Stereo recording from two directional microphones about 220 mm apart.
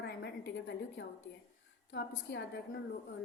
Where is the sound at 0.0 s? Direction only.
50° left (ahead or behind).